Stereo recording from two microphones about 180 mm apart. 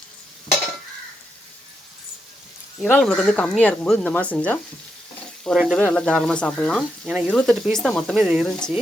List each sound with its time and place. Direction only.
2.8 s speech: 5° left (ahead or behind)